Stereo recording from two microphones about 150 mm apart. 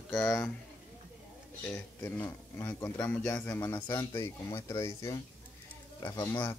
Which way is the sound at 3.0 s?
10° left (ahead or behind).